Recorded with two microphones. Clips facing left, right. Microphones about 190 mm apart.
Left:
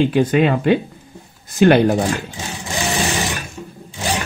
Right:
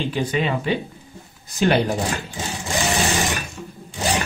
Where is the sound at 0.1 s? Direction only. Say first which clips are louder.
Left 7 dB; 50° left (ahead or behind).